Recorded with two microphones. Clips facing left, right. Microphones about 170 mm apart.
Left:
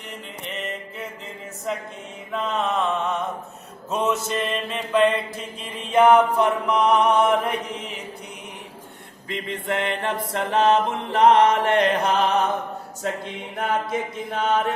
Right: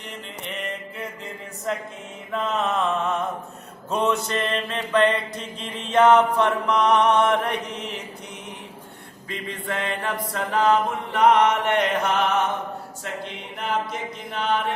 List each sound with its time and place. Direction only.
0.4 s mantra: centre (ahead or behind)
5.4 s chant: 10° left (ahead or behind)
9.3 s mantra: 25° left (ahead or behind)
10.3 s chant: 25° left (ahead or behind)
13.2 s mantra: 50° left (ahead or behind)